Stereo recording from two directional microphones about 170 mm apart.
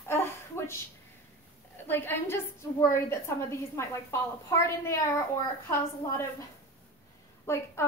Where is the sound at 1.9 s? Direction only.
15° left (ahead or behind).